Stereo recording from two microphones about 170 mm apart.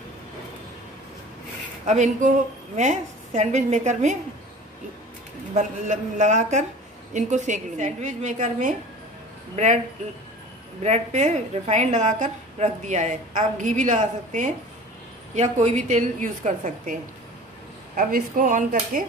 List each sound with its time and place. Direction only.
1.9 s a woman's voice: 45° right (ahead or behind)
5.5 s a woman's voice: 45° right (ahead or behind)
10.8 s a woman's voice: 40° right (ahead or behind)
17.9 s a woman's voice: 50° right (ahead or behind)